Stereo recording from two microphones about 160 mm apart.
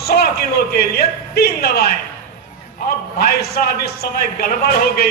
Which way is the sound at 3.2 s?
75° left (ahead or behind).